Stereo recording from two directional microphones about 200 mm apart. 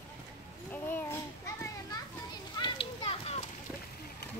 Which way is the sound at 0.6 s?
10° left (ahead or behind).